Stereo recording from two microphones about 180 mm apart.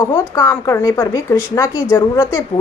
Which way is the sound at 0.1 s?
15° left (ahead or behind).